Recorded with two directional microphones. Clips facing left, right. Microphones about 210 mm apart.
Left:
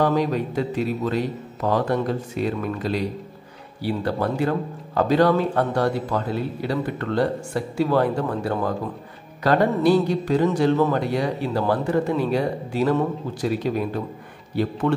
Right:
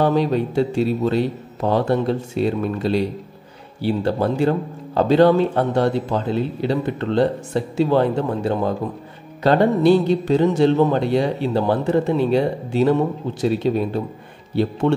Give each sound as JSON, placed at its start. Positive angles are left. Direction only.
{"t": 0.0, "sound": "speech", "side_deg": -30}